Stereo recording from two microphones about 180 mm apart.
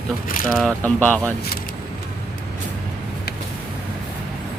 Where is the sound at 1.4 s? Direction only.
60° left (ahead or behind).